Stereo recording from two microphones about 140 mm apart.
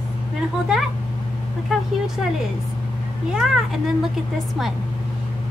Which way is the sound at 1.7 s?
Centre (ahead or behind).